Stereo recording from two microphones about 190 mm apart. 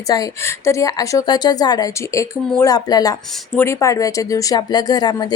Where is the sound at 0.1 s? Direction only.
15° left (ahead or behind).